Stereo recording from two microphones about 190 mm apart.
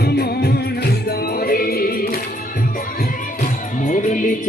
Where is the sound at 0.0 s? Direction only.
55° left (ahead or behind).